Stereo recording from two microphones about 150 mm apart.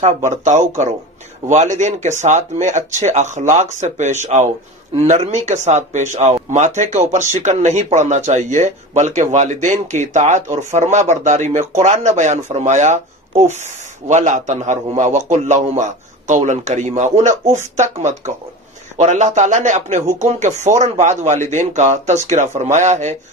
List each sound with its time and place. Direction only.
0.0 s speech: 50° right (ahead or behind)
14.0 s speech: 55° right (ahead or behind)